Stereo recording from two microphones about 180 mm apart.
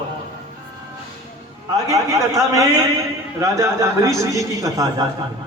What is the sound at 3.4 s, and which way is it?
A man's voice, 15° right (ahead or behind).